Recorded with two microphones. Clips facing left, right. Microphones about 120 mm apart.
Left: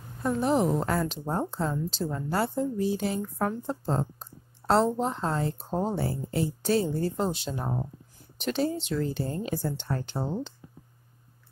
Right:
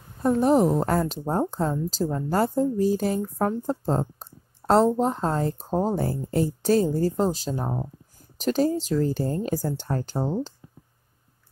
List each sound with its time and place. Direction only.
0.2 s a woman's voice: 40° right (ahead or behind)
4.2 s a sound: 40° right (ahead or behind)
5.0 s a woman's voice: 40° right (ahead or behind)